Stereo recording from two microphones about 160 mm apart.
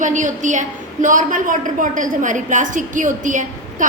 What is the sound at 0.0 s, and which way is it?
A woman's voice, 50° right (ahead or behind).